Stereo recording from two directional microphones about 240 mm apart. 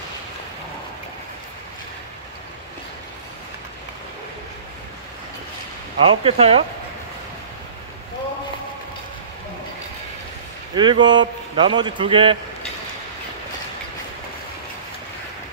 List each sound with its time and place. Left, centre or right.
6.0 s speech: right
10.7 s speech: centre